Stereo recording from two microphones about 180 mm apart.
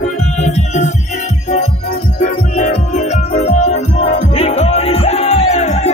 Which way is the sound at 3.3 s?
40° left (ahead or behind).